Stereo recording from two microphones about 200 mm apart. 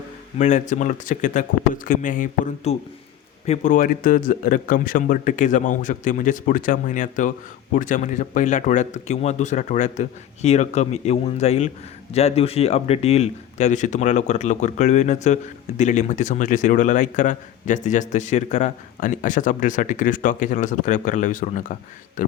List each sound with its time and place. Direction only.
0.3 s speech: 35° left (ahead or behind)